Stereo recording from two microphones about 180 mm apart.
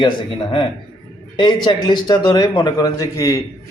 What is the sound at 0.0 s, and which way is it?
Speech, 30° left (ahead or behind).